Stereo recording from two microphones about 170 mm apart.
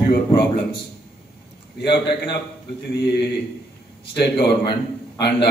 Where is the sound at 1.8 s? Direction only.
75° left (ahead or behind).